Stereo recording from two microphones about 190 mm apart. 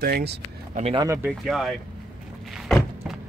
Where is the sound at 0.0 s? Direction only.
55° right (ahead or behind).